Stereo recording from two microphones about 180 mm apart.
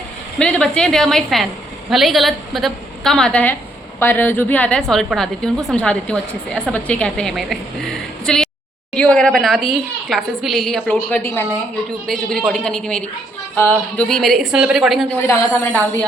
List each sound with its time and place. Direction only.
0.3 s a woman's voice: 5° left (ahead or behind)
12.0 s a woman's voice: centre (ahead or behind)